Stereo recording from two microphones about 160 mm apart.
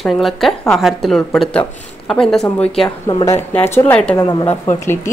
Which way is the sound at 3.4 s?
15° left (ahead or behind).